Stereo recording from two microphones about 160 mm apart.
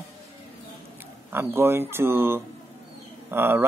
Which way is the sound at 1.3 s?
15° right (ahead or behind).